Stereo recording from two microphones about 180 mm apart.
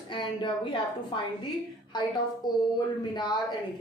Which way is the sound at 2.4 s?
25° left (ahead or behind).